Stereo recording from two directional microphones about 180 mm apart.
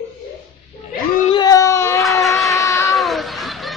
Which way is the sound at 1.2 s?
25° left (ahead or behind).